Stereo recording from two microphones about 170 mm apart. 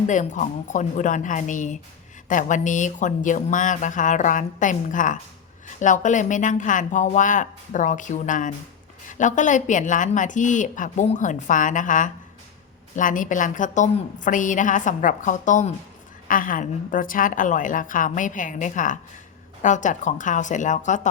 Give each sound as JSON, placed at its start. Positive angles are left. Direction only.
{"t": 0.1, "sound": "a woman's voice", "side_deg": 45}